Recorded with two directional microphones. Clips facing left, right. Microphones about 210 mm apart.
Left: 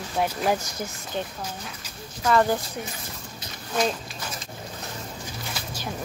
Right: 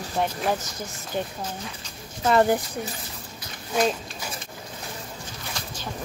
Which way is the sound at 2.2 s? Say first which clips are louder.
Right 2 dB; 25° right (ahead or behind).